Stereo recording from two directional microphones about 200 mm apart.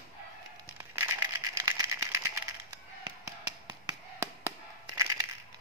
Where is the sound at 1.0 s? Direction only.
15° right (ahead or behind).